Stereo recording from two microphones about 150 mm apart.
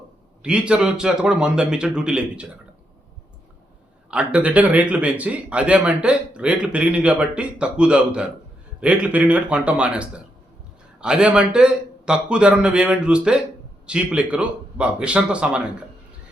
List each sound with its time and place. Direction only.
0.4 s a man's voice: 5° right (ahead or behind)
4.1 s a man's voice: 10° right (ahead or behind)